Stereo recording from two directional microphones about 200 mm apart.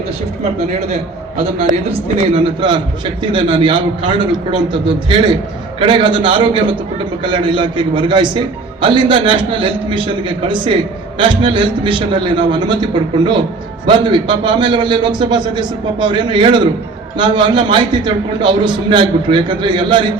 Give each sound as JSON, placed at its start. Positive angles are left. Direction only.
{"t": 1.6, "sound": "a man's voice", "side_deg": -30}